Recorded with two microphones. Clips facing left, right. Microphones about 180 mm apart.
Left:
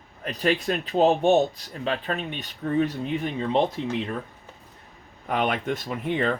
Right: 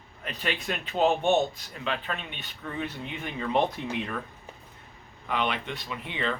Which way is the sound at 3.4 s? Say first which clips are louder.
Left 2 dB; 30° left (ahead or behind).